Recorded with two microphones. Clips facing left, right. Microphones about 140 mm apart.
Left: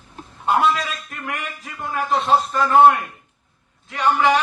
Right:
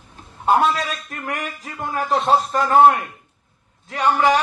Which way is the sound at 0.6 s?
35° right (ahead or behind).